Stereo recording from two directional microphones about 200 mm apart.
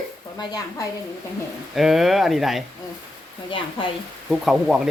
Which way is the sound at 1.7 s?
Centre (ahead or behind).